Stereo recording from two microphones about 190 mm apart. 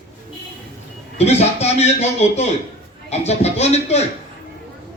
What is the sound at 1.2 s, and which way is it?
Speech, 35° left (ahead or behind).